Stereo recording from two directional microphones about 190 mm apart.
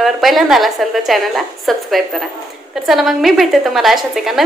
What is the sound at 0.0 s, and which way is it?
A woman's voice, centre (ahead or behind).